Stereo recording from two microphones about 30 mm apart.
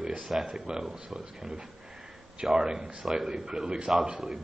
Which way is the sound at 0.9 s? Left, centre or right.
Right.